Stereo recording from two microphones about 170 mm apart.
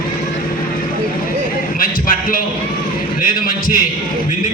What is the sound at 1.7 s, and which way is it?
A man's voice, 55° left (ahead or behind).